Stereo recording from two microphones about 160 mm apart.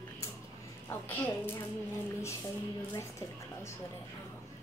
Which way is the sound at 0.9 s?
15° left (ahead or behind).